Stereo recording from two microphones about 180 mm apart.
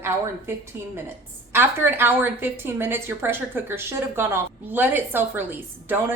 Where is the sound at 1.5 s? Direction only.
10° right (ahead or behind).